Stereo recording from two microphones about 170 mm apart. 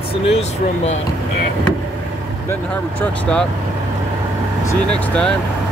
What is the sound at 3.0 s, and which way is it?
Speech, 5° left (ahead or behind).